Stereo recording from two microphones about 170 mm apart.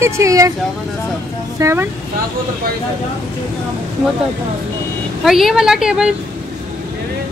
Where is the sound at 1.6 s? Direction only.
15° right (ahead or behind).